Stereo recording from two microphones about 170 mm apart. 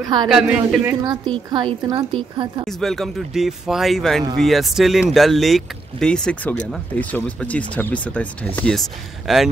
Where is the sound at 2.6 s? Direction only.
Centre (ahead or behind).